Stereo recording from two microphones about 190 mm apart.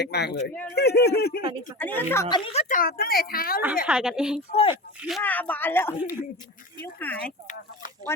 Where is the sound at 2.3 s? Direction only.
30° left (ahead or behind); by 3.6 s 50° left (ahead or behind).